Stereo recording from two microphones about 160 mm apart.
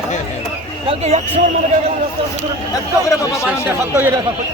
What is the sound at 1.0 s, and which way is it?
Speech, 45° right (ahead or behind).